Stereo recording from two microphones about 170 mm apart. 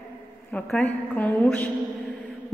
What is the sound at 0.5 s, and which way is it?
A woman's voice, 5° left (ahead or behind).